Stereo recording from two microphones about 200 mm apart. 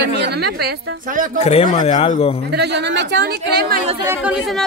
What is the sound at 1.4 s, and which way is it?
Speech, 30° left (ahead or behind).